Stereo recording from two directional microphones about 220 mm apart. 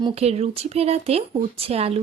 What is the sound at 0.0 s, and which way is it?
Speech, 30° right (ahead or behind).